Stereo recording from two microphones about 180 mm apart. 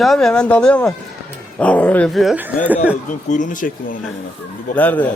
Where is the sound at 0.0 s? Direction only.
Centre (ahead or behind).